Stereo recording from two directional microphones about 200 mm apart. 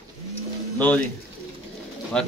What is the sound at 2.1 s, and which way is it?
Speech, 5° left (ahead or behind).